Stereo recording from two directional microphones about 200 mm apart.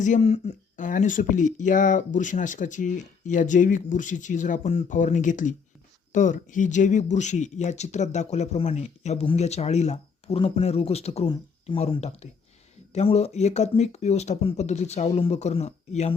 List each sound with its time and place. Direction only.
0.0 s speech: 35° left (ahead or behind)